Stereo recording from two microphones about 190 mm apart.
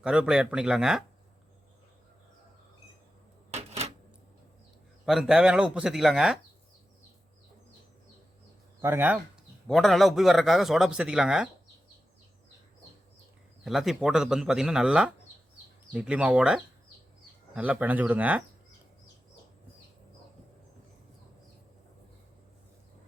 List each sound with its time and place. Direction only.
0.0 s speech: 5° right (ahead or behind)
3.5 s cash register: 35° right (ahead or behind)
5.0 s speech: centre (ahead or behind)
8.8 s speech: 10° right (ahead or behind)
9.6 s speech: centre (ahead or behind)
13.7 s speech: centre (ahead or behind)